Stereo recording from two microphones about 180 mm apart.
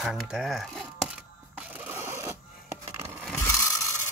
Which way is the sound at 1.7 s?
10° right (ahead or behind).